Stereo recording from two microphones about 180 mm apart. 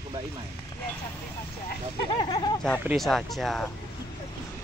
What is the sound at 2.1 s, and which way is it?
Speech, 25° left (ahead or behind).